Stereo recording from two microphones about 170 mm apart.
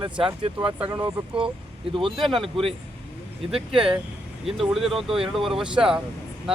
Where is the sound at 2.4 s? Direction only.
30° right (ahead or behind).